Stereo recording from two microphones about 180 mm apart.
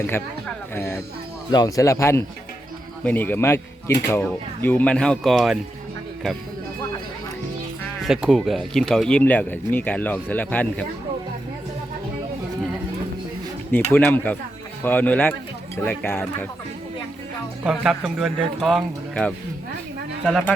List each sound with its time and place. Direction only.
0.0 s speech: 15° left (ahead or behind)
8.0 s speech: centre (ahead or behind)
13.9 s speech: 10° left (ahead or behind)
17.7 s speech: centre (ahead or behind)